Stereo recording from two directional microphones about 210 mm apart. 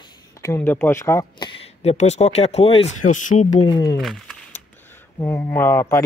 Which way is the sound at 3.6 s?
20° left (ahead or behind).